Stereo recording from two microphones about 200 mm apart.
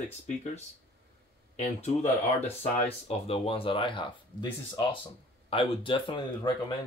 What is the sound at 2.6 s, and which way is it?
Speech, 30° left (ahead or behind).